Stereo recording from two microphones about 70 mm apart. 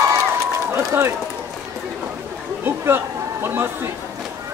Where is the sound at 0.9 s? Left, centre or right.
Right.